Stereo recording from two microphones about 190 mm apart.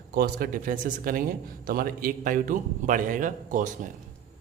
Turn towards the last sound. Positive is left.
turn(degrees=-40)  # may be behind; listen again after turning